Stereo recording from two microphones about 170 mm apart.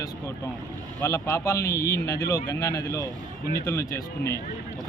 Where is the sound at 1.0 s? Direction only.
20° left (ahead or behind).